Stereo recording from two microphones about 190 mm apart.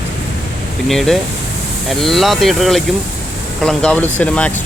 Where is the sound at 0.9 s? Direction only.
Centre (ahead or behind).